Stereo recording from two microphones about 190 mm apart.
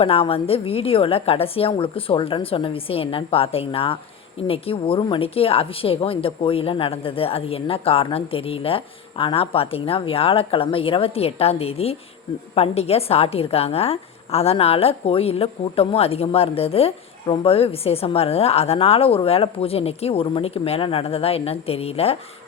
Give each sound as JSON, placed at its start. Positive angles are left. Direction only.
{"t": 0.0, "sound": "a woman's voice", "side_deg": 30}